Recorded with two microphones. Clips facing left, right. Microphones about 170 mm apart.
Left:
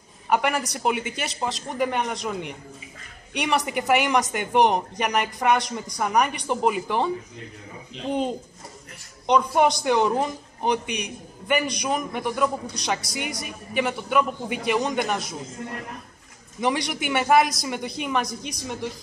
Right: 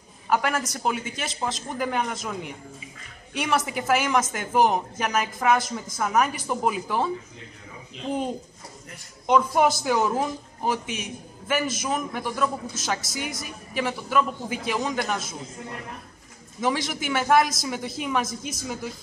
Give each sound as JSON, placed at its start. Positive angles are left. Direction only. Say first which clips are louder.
{"t": 0.3, "sound": "a man's voice", "louder": "left 1 dB", "side_deg": 0}
{"t": 16.6, "sound": "a man's voice", "louder": "left 1 dB", "side_deg": 0}